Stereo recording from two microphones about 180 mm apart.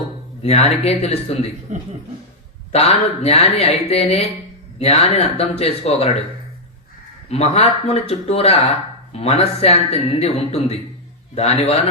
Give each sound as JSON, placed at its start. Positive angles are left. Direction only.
{"t": 0.4, "sound": "speech", "side_deg": 35}
{"t": 1.7, "sound": "speech", "side_deg": -40}
{"t": 2.7, "sound": "speech", "side_deg": 35}
{"t": 7.3, "sound": "speech", "side_deg": 35}